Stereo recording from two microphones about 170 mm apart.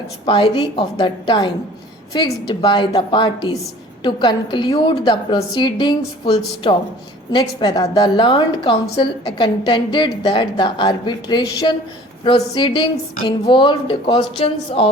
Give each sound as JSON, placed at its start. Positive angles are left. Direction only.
{"t": 0.3, "sound": "a woman's voice", "side_deg": 30}